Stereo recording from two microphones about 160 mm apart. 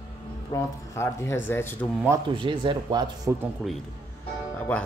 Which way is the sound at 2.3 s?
30° right (ahead or behind).